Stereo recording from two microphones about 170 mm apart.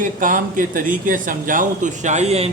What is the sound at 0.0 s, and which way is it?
Speech, 50° right (ahead or behind).